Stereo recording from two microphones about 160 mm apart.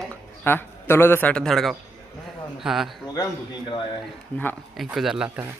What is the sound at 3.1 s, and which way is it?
Speech, 25° left (ahead or behind).